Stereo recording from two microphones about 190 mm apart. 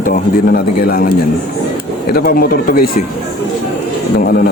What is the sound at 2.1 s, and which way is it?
Speech, 50° left (ahead or behind).